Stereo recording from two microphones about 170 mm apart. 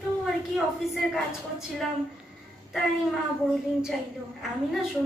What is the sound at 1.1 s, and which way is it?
Speech, centre (ahead or behind).